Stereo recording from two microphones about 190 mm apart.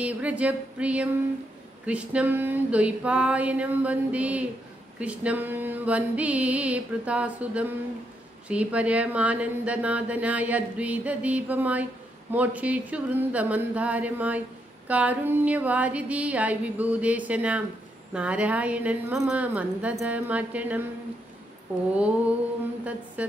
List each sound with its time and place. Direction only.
0.0 s speech: 5° right (ahead or behind)
23.2 s a woman's voice: 5° right (ahead or behind)